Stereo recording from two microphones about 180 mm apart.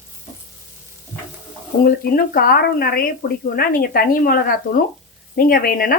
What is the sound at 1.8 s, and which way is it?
Speech, 55° left (ahead or behind).